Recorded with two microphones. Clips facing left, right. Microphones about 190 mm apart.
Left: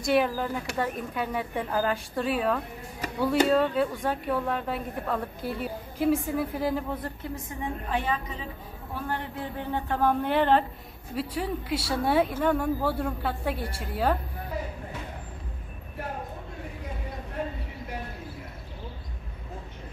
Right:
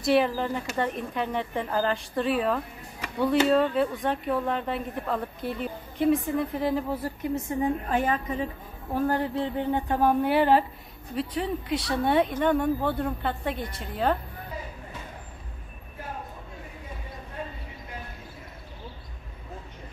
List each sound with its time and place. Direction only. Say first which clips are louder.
0.0 s a woman's voice: right 2 dB; centre (ahead or behind)
7.2 s a woman's voice: right 7 dB; 25° right (ahead or behind)
7.6 s a woman's voice: right 3 dB; 45° right (ahead or behind)
9.4 s speech: right 5 dB; 20° right (ahead or behind)
11.1 s a woman's voice: right 1 dB; 5° left (ahead or behind)